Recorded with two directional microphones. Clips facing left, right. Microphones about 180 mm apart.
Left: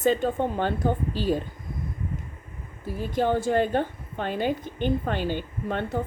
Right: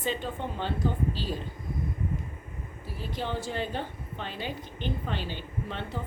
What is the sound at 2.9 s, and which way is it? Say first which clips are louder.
Speech: left 9 dB; 50° left (ahead or behind).